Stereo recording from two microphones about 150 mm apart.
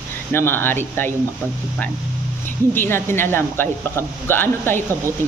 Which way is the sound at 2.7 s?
15° left (ahead or behind).